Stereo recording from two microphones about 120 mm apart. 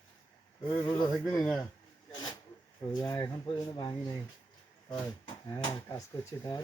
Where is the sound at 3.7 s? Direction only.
35° left (ahead or behind).